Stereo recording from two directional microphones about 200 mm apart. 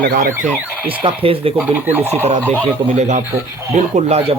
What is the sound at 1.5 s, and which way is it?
Speech, 10° right (ahead or behind).